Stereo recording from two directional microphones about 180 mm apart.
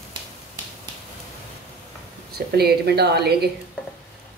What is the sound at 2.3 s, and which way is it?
A woman's voice, 60° right (ahead or behind).